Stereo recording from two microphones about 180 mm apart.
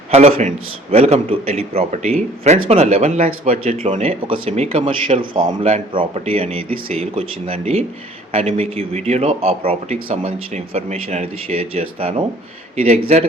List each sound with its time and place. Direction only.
0.1 s a man's voice: 35° right (ahead or behind)